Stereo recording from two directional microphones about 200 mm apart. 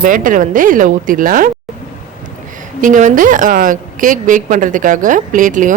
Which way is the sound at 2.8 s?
40° right (ahead or behind).